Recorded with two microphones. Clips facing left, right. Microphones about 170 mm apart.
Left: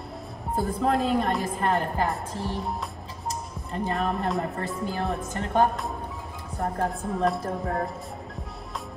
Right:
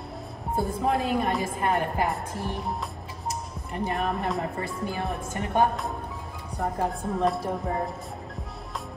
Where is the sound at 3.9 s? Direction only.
Centre (ahead or behind).